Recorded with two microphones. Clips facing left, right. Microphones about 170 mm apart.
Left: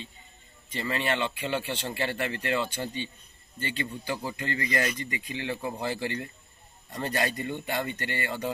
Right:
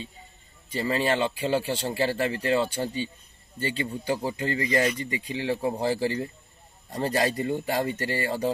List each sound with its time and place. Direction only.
0.7 s speech: 35° right (ahead or behind)